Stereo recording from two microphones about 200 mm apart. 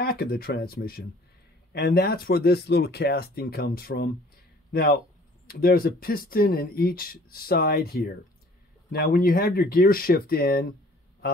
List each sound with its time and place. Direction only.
0.0 s speech: 50° left (ahead or behind)